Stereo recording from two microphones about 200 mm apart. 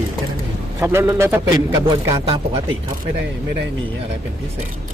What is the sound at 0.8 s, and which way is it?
Speech, 15° right (ahead or behind).